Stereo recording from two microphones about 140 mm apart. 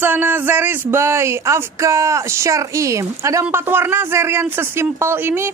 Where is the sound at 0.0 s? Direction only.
15° right (ahead or behind).